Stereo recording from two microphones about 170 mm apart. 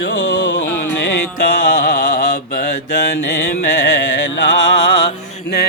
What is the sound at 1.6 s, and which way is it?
Mantra, 55° left (ahead or behind).